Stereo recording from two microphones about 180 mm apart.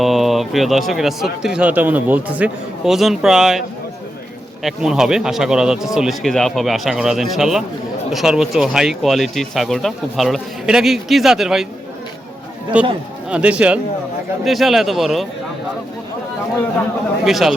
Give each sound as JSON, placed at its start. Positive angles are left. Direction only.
{"t": 0.0, "sound": "speech", "side_deg": 0}
{"t": 4.6, "sound": "speech", "side_deg": -5}
{"t": 12.7, "sound": "a man's voice", "side_deg": -5}
{"t": 17.2, "sound": "speech", "side_deg": 0}